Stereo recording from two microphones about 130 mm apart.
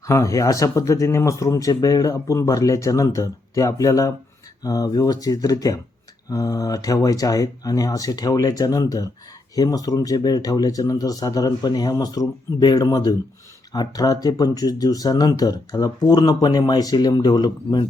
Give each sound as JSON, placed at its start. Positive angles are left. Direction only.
{"t": 0.0, "sound": "speech", "side_deg": 25}